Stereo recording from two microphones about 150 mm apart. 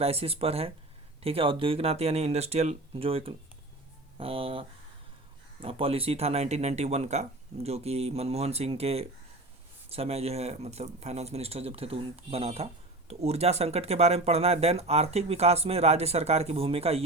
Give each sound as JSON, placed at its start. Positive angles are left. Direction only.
{"t": 0.0, "sound": "speech", "side_deg": -40}
{"t": 5.6, "sound": "speech", "side_deg": -40}